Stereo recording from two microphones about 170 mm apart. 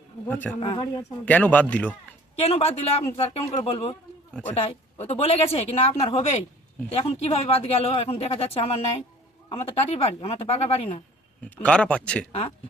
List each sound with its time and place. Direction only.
0.3 s speech: 10° left (ahead or behind)
0.6 s speech: 25° left (ahead or behind)
1.2 s speech: 10° left (ahead or behind)
2.4 s speech: 35° left (ahead or behind)
4.9 s speech: 35° left (ahead or behind)
11.5 s speech: 5° left (ahead or behind)
12.3 s speech: 30° left (ahead or behind)